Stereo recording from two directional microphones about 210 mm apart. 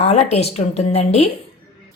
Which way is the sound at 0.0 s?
30° left (ahead or behind).